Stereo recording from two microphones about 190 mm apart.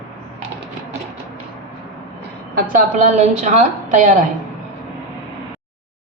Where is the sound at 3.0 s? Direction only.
35° right (ahead or behind).